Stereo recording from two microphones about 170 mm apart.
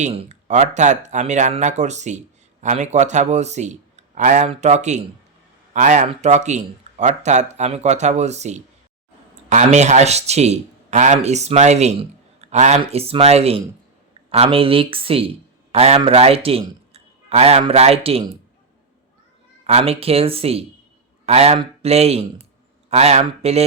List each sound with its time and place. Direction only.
0.0 s a man's voice: 40° right (ahead or behind)
19.6 s a man's voice: 35° right (ahead or behind)